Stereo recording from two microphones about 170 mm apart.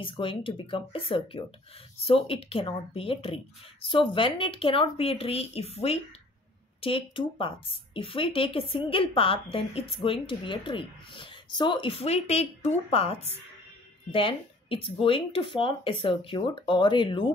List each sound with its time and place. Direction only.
0.0 s speech: 30° left (ahead or behind)